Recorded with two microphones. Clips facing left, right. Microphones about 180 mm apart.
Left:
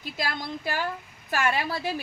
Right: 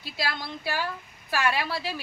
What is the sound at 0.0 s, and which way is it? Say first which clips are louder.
Speech: left 1 dB; 45° left (ahead or behind).